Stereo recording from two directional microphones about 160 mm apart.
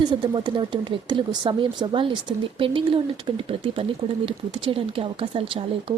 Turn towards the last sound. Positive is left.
turn(degrees=-35)  # may be behind; listen again after turning